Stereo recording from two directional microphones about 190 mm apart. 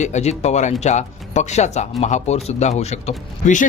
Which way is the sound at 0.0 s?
35° left (ahead or behind).